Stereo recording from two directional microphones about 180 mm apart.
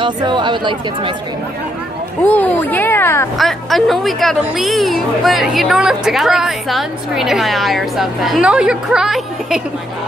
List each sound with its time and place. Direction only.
0.0 s speech: 25° right (ahead or behind)
2.2 s speech: 10° left (ahead or behind)
3.3 s speech: centre (ahead or behind)